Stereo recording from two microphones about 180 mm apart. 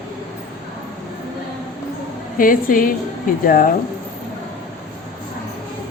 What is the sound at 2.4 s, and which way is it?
A woman's voice, 50° left (ahead or behind).